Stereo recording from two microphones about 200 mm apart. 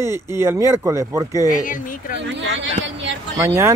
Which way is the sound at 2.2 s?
65° right (ahead or behind).